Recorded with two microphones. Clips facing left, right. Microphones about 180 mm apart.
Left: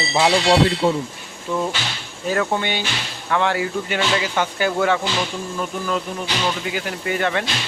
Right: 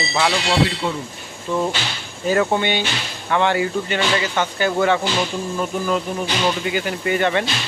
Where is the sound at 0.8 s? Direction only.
40° left (ahead or behind).